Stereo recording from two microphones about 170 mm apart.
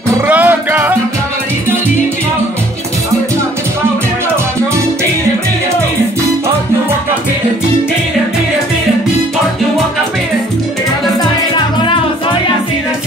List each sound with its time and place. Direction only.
0.3 s music: 10° right (ahead or behind)
11.5 s music: 30° left (ahead or behind)